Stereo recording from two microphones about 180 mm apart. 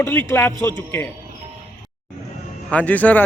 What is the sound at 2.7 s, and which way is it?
Speech, 10° left (ahead or behind).